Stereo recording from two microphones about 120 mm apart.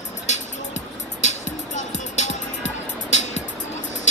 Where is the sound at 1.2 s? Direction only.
70° left (ahead or behind).